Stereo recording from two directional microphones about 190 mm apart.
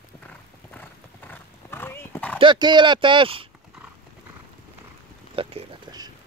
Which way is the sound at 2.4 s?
25° right (ahead or behind).